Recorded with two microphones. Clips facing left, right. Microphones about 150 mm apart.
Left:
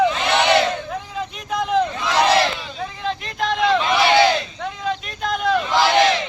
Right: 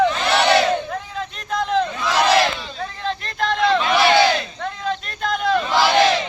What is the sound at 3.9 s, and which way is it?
Battle cry, 20° left (ahead or behind).